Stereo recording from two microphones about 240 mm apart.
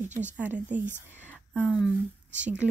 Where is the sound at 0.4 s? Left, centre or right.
Centre.